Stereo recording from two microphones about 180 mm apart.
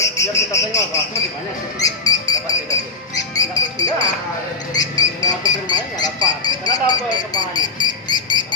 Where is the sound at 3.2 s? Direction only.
20° left (ahead or behind).